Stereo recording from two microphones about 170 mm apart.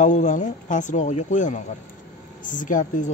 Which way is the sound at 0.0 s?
45° left (ahead or behind).